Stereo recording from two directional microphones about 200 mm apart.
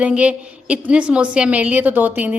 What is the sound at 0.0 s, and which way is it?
A woman's voice, 5° right (ahead or behind).